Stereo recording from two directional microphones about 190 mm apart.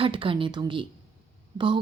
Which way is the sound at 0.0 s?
25° right (ahead or behind).